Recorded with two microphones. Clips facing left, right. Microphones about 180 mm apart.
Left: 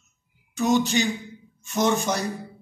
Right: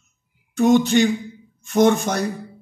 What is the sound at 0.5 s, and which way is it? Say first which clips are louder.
Speech: right 6 dB; 55° right (ahead or behind).